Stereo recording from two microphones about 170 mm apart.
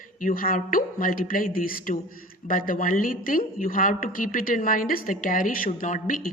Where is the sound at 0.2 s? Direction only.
55° left (ahead or behind).